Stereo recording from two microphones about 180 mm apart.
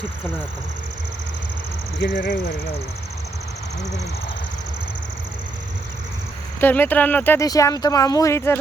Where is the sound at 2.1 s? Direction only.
60° left (ahead or behind).